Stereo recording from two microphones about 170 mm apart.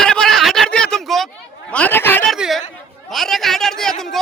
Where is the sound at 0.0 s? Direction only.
5° left (ahead or behind).